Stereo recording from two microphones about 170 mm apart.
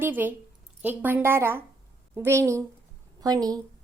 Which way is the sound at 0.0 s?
10° right (ahead or behind).